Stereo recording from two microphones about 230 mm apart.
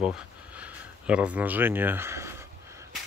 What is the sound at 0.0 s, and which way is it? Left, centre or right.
Speech, centre.